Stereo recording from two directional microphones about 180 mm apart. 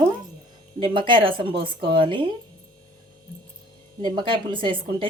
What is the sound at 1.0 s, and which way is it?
A woman's voice, 25° right (ahead or behind).